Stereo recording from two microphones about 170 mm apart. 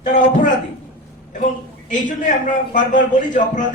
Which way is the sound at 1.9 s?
50° left (ahead or behind).